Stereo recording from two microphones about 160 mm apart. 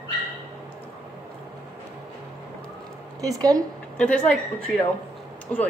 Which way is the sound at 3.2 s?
20° right (ahead or behind).